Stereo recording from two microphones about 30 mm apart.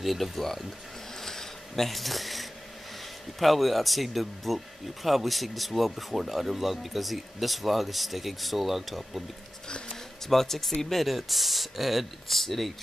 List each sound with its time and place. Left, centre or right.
0.0 s speech: centre
0.4 s speech: centre
1.2 s a sound: centre
3.3 s speech: centre
10.2 s speech: centre
11.0 s speech: centre
12.3 s speech: centre